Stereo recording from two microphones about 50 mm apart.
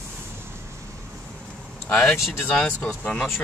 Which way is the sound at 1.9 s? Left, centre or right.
Left.